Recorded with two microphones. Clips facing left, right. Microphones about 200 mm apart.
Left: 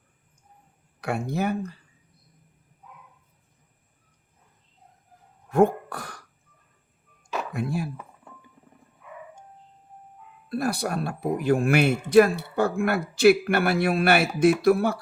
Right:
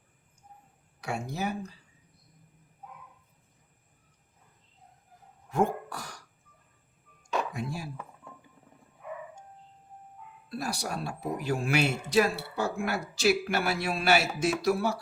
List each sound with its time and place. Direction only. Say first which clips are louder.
1.0 s speech: left 6 dB; 60° left (ahead or behind)
5.5 s throat clearing: left 7 dB; 55° left (ahead or behind)
7.5 s speech: left 7 dB; 60° left (ahead or behind)
10.5 s speech: left 8 dB; 55° left (ahead or behind)